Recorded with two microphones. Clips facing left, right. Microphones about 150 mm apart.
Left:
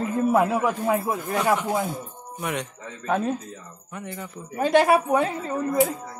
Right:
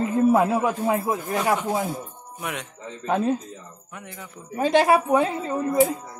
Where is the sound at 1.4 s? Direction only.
Centre (ahead or behind).